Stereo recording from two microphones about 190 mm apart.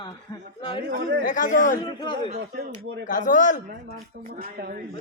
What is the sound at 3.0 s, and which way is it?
Speech, 45° left (ahead or behind).